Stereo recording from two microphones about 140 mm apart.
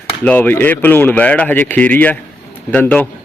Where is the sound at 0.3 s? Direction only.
15° left (ahead or behind).